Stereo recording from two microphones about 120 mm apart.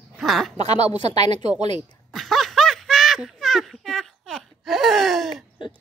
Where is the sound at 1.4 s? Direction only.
65° right (ahead or behind).